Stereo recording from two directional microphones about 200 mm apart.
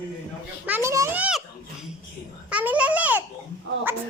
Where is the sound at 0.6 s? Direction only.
10° right (ahead or behind).